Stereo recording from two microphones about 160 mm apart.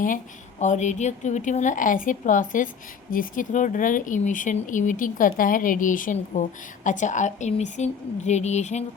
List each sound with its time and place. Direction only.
0.6 s a woman's voice: 50° left (ahead or behind)